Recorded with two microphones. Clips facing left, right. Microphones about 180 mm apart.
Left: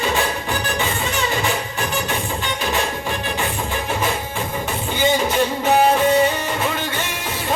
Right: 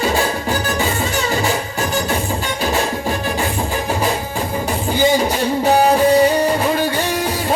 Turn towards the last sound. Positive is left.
turn(degrees=-35)  # may be behind; listen again after turning